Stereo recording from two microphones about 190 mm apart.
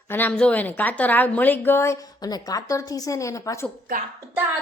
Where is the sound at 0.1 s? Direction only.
10° left (ahead or behind).